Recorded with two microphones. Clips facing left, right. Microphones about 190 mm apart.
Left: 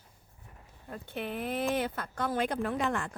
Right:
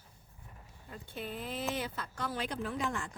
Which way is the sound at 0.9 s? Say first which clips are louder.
Left 5 dB; 65° left (ahead or behind).